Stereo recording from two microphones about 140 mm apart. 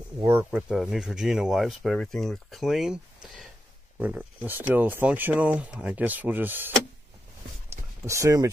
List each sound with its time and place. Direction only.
0.2 s speech: 20° right (ahead or behind)
0.5 s speech: 5° right (ahead or behind)
4.0 s speech: 15° right (ahead or behind)
7.7 s a sound: 20° right (ahead or behind)